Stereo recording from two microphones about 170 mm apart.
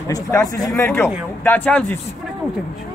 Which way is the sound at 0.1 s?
20° left (ahead or behind).